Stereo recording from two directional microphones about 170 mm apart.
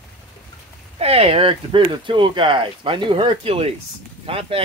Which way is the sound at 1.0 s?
35° right (ahead or behind).